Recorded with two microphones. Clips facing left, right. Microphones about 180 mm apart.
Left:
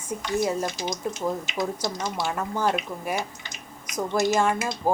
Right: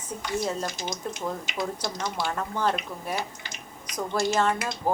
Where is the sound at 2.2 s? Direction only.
10° left (ahead or behind).